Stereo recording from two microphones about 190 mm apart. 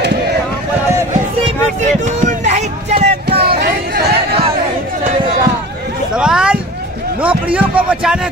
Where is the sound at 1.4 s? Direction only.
40° right (ahead or behind).